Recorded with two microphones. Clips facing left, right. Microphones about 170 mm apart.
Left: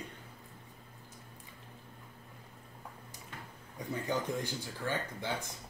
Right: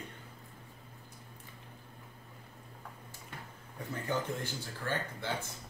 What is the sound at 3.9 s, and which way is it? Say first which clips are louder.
Speech: left 1 dB; 15° left (ahead or behind).